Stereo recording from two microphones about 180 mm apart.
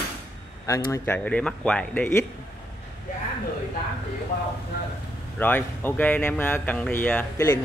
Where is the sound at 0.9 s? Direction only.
10° left (ahead or behind).